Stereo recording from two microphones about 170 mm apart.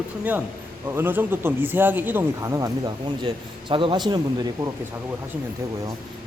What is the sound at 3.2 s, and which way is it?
Speech, 30° right (ahead or behind).